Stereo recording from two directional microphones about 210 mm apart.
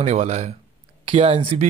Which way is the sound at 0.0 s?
30° right (ahead or behind).